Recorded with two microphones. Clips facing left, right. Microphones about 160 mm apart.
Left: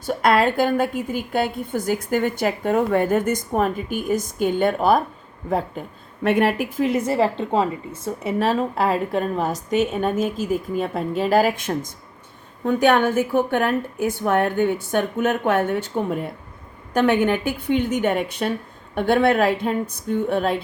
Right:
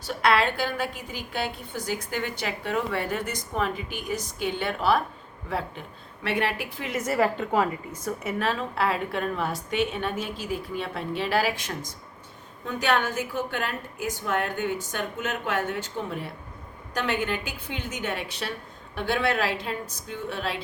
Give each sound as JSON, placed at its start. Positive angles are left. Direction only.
{"t": 0.0, "sound": "a woman's voice", "side_deg": 45}